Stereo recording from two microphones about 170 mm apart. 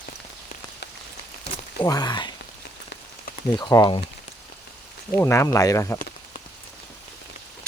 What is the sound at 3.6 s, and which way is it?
Speech, 25° left (ahead or behind).